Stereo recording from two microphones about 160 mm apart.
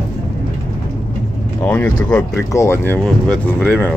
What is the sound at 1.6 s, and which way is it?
Speech, 10° left (ahead or behind).